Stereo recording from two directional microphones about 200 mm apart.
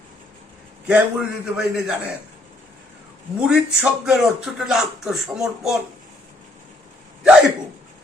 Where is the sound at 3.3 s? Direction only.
5° right (ahead or behind).